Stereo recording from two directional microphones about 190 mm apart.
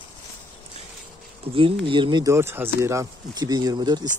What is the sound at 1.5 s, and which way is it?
Speech, 30° right (ahead or behind).